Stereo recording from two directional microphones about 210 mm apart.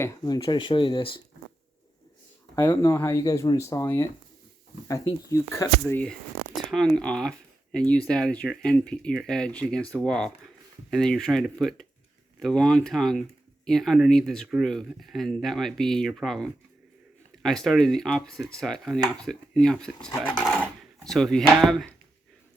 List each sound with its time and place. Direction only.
0.0 s speech: 15° left (ahead or behind)
2.6 s speech: 15° left (ahead or behind)